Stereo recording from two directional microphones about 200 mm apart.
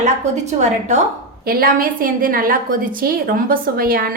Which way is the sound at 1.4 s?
50° right (ahead or behind).